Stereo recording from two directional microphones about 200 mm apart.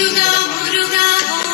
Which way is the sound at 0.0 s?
50° left (ahead or behind).